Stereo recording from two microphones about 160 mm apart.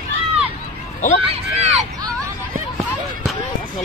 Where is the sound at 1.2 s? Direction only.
40° right (ahead or behind).